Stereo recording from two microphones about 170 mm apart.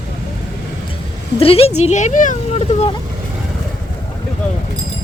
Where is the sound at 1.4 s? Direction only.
35° left (ahead or behind).